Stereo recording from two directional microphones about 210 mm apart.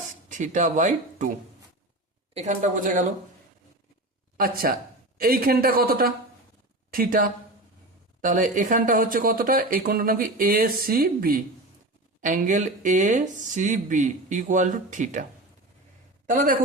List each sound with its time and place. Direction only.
0.3 s speech: 35° right (ahead or behind)
4.4 s a man's voice: 45° right (ahead or behind)